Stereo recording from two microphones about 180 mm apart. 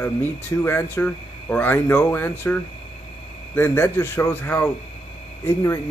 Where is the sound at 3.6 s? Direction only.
15° left (ahead or behind).